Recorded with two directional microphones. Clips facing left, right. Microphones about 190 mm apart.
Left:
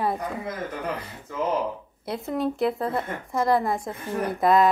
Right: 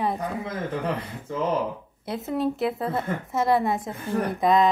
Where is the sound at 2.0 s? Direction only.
Centre (ahead or behind).